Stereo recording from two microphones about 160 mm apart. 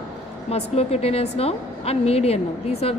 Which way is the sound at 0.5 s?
40° left (ahead or behind).